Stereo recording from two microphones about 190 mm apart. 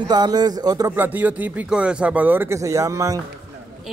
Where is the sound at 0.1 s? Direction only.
20° right (ahead or behind).